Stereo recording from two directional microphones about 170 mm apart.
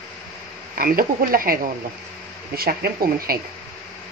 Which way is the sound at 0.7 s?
55° right (ahead or behind).